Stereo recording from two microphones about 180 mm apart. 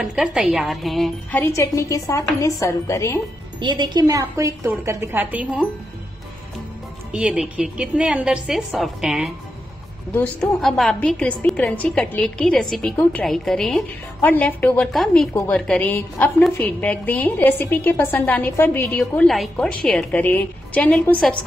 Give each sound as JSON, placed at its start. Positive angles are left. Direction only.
{"t": 0.0, "sound": "a woman's voice", "side_deg": -5}
{"t": 1.4, "sound": "a woman's voice", "side_deg": 15}
{"t": 3.5, "sound": "a woman's voice", "side_deg": -25}
{"t": 7.1, "sound": "a woman's voice", "side_deg": -5}